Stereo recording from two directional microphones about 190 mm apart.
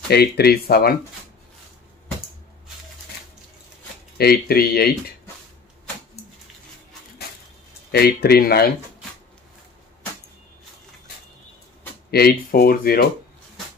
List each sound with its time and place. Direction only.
0.1 s speech: 55° left (ahead or behind)
4.2 s speech: 55° left (ahead or behind)
7.9 s speech: 55° left (ahead or behind)
12.1 s speech: 55° left (ahead or behind)